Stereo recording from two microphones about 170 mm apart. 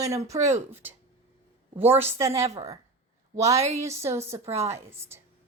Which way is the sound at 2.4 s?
40° right (ahead or behind).